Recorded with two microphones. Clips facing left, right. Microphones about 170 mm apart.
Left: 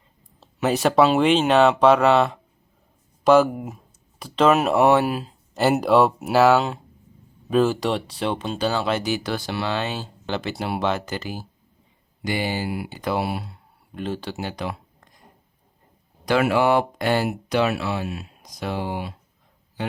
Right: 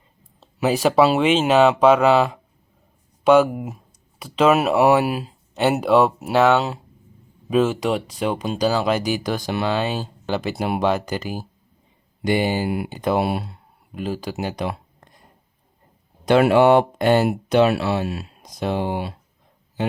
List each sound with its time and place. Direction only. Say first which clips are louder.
0.3 s speech: right 2 dB; 5° right (ahead or behind); by 13.6 s 25° right (ahead or behind)
13.9 s speech: right 2 dB; 10° right (ahead or behind)
16.2 s speech: right 5 dB; 25° right (ahead or behind)